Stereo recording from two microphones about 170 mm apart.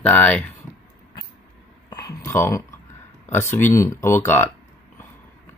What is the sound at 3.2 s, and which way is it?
Speech, 15° left (ahead or behind).